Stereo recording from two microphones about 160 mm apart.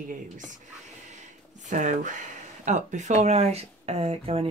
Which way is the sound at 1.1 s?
50° right (ahead or behind).